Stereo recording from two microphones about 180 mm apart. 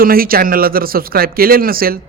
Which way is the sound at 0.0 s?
55° right (ahead or behind).